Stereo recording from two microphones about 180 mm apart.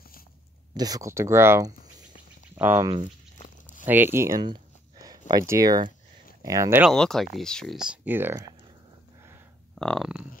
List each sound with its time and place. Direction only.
0.7 s speech: 20° right (ahead or behind)
6.9 s speech: centre (ahead or behind); by 8.5 s 15° right (ahead or behind)
9.8 s speech: centre (ahead or behind)